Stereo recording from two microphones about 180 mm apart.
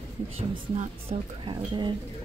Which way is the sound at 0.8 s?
30° right (ahead or behind).